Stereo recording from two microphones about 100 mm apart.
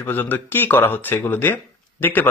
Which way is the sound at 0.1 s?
20° left (ahead or behind).